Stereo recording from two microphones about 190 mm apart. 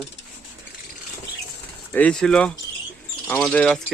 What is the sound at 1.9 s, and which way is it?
Speech, 5° left (ahead or behind).